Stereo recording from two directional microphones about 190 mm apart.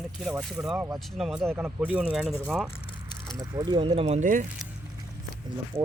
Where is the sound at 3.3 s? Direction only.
20° right (ahead or behind).